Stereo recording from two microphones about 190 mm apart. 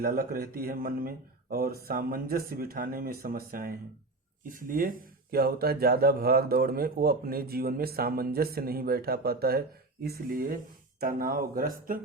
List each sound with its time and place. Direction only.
0.0 s speech: 50° right (ahead or behind)